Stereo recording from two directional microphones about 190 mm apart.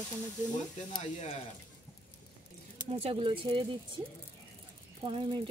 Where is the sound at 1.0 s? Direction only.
40° left (ahead or behind).